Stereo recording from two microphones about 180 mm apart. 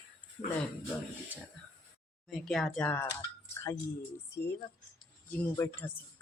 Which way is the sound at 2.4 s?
Centre (ahead or behind).